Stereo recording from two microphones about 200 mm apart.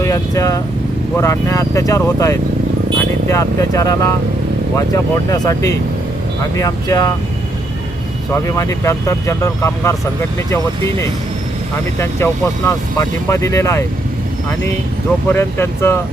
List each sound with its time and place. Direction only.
0.0 s speech: 15° left (ahead or behind)
5.3 s speech: 15° left (ahead or behind)
8.3 s speech: 15° left (ahead or behind)
11.9 s speech: 15° left (ahead or behind)
15.3 s speech: 10° left (ahead or behind)